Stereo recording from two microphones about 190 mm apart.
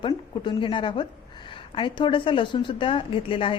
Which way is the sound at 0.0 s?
25° left (ahead or behind).